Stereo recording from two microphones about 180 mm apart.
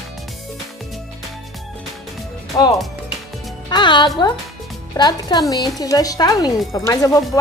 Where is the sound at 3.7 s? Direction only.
25° left (ahead or behind).